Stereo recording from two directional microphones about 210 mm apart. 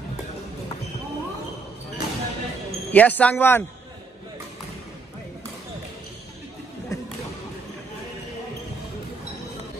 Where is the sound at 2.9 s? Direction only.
5° left (ahead or behind).